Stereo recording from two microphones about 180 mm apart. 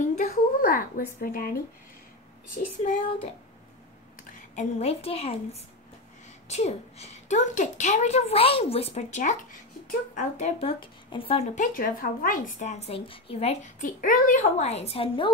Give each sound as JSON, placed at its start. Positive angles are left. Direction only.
{"t": 0.1, "sound": "speech", "side_deg": 45}
{"t": 2.5, "sound": "child singing", "side_deg": 45}
{"t": 4.2, "sound": "a woman's voice", "side_deg": 40}